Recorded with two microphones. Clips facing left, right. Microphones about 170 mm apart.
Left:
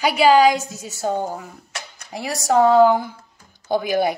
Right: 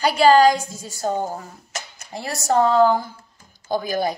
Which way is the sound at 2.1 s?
15° left (ahead or behind).